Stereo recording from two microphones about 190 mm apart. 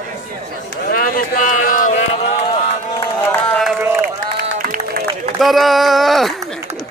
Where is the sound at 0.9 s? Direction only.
50° left (ahead or behind).